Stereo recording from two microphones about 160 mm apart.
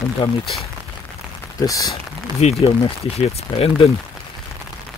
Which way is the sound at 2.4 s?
45° left (ahead or behind).